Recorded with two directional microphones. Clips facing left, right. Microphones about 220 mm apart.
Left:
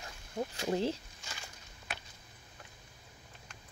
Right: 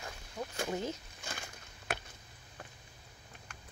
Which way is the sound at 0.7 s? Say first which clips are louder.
Left 6 dB; 30° left (ahead or behind).